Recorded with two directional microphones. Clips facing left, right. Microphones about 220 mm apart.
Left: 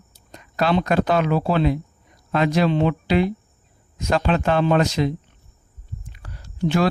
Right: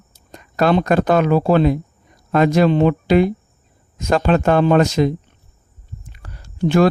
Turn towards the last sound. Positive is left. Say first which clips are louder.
# right 5 dB
turn(degrees=-50)  # may be behind; listen again after turning